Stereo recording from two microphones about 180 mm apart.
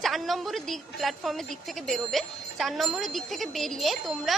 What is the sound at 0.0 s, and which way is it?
A woman's voice, centre (ahead or behind).